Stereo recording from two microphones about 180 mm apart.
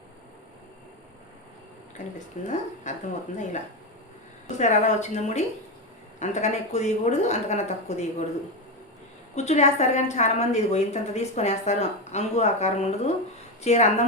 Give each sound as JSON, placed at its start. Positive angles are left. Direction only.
{"t": 2.1, "sound": "a woman's voice", "side_deg": 45}
{"t": 9.3, "sound": "a woman's voice", "side_deg": 40}